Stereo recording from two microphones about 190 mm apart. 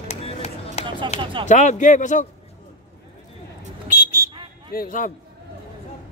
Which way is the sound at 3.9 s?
50° left (ahead or behind).